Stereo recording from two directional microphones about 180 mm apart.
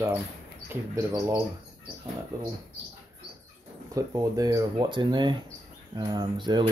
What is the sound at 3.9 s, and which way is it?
Speech, 20° right (ahead or behind).